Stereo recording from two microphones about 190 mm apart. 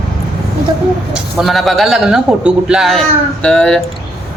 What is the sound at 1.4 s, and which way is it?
Speech, centre (ahead or behind).